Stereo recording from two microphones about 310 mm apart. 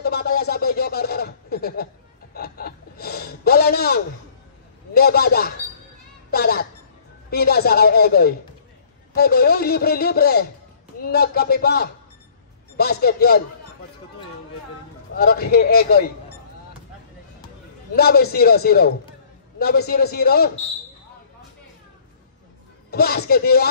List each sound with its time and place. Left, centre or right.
0.0 s speech: left
2.3 s gasp: left
4.9 s a man's voice: left
15.1 s a man's voice: left
17.9 s a man's voice: left
22.8 s speech: left